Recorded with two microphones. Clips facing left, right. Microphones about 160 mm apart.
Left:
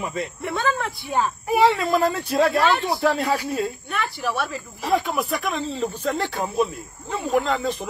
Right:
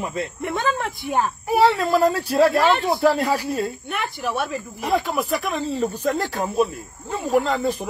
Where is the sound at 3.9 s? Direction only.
20° right (ahead or behind).